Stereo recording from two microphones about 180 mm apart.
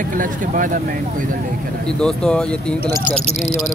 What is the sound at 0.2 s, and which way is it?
Speech, 45° right (ahead or behind).